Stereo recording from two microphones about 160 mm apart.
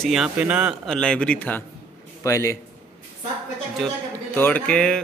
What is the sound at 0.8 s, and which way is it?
A man's voice, 5° left (ahead or behind).